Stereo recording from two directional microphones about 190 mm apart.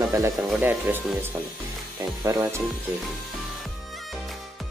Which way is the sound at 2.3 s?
15° right (ahead or behind).